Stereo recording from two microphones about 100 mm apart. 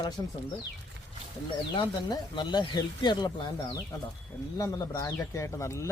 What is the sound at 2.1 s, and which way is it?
Speech, 45° left (ahead or behind).